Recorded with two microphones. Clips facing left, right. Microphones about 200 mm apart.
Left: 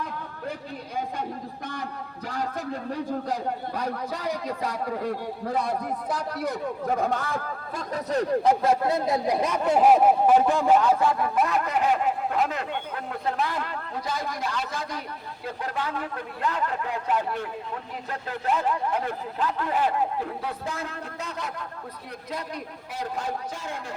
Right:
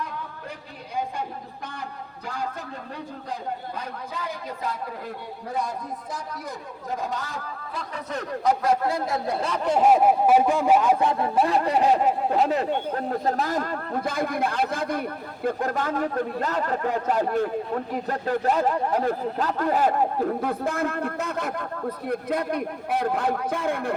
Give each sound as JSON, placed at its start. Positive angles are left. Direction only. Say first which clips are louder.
{"t": 3.8, "sound": "speech", "louder": "left 4 dB", "side_deg": 40}
{"t": 5.6, "sound": "a man's voice", "louder": "left 4 dB", "side_deg": 65}
{"t": 7.8, "sound": "speech", "louder": "left 6 dB", "side_deg": 35}
{"t": 9.4, "sound": "speech", "louder": "right 1 dB", "side_deg": 10}